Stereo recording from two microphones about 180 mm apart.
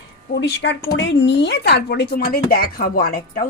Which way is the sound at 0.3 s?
75° left (ahead or behind).